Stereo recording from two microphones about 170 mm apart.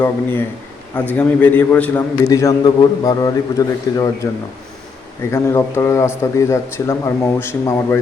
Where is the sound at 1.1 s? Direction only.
10° left (ahead or behind).